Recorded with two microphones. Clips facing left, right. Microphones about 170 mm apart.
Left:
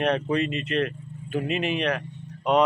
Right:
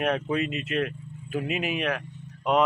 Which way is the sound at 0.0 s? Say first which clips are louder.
Left 2 dB; 5° right (ahead or behind).